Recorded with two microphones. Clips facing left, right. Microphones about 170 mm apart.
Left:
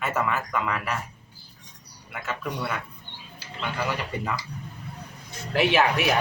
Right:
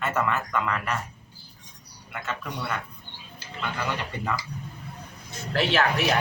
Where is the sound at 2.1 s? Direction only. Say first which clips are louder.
Left 2 dB; 5° left (ahead or behind).